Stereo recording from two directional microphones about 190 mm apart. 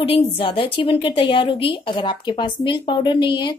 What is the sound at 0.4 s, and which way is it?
Speech, 25° left (ahead or behind).